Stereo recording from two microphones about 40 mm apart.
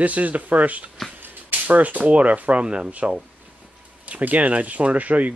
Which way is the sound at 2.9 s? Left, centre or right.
Right.